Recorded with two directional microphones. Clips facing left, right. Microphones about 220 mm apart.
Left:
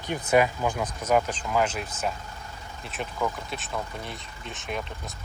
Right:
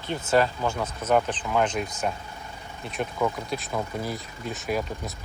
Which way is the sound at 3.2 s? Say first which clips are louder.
Right 3 dB; centre (ahead or behind).